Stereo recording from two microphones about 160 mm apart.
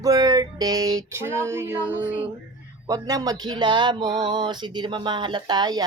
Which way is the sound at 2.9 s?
20° right (ahead or behind).